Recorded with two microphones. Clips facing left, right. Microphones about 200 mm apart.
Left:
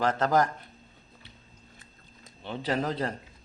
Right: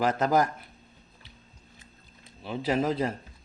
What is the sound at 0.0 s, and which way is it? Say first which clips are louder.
Speech: right 1 dB; 10° right (ahead or behind).